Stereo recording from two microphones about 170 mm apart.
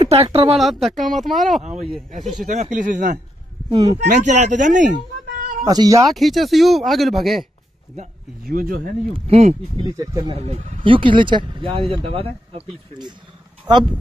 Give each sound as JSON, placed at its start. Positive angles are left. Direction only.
{"t": 0.0, "sound": "speech", "side_deg": -35}
{"t": 0.6, "sound": "speech", "side_deg": 0}
{"t": 1.6, "sound": "speech", "side_deg": -40}
{"t": 3.7, "sound": "speech", "side_deg": -20}
{"t": 4.0, "sound": "speech", "side_deg": -45}
{"t": 5.6, "sound": "speech", "side_deg": -20}
{"t": 6.0, "sound": "speech", "side_deg": 0}
{"t": 8.5, "sound": "speech", "side_deg": -60}
{"t": 9.1, "sound": "speech", "side_deg": -40}
{"t": 9.9, "sound": "speech", "side_deg": -25}
{"t": 10.3, "sound": "speech", "side_deg": -40}
{"t": 10.8, "sound": "speech", "side_deg": -30}
{"t": 13.7, "sound": "speech", "side_deg": -25}